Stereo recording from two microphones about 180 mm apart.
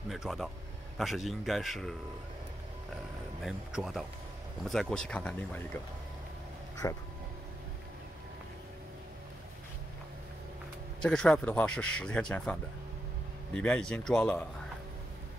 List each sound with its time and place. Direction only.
0.1 s speech: centre (ahead or behind)
3.4 s speech: centre (ahead or behind)
6.8 s speech: 15° left (ahead or behind)
11.0 s speech: 5° left (ahead or behind)